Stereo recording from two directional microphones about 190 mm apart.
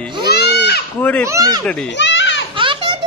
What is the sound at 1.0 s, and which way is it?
Speech, 10° left (ahead or behind).